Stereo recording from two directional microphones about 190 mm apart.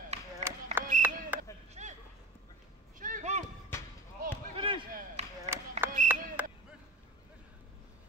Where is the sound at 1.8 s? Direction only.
35° right (ahead or behind).